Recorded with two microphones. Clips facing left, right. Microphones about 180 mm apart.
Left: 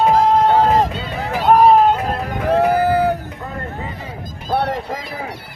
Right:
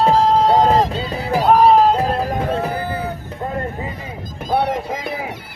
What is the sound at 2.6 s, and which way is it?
Crowd, 75° left (ahead or behind).